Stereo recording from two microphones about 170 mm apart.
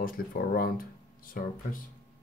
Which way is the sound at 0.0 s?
60° left (ahead or behind).